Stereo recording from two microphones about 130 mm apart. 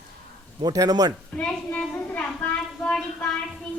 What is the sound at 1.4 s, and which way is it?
A woman's voice, 10° left (ahead or behind).